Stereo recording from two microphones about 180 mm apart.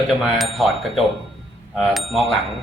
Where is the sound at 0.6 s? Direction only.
Centre (ahead or behind).